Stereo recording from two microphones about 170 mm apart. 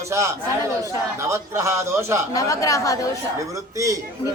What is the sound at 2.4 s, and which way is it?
Speech, 20° left (ahead or behind).